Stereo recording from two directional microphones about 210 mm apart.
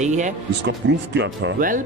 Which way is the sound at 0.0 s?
35° right (ahead or behind).